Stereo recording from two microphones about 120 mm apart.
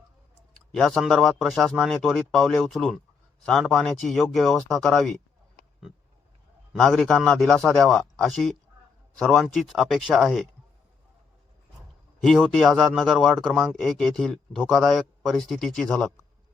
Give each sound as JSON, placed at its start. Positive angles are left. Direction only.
{"t": 0.7, "sound": "speech", "side_deg": 5}
{"t": 6.7, "sound": "speech", "side_deg": 5}
{"t": 12.2, "sound": "speech", "side_deg": 0}